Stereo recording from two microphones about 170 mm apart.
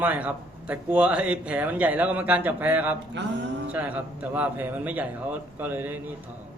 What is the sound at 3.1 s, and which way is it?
Speech, 90° right.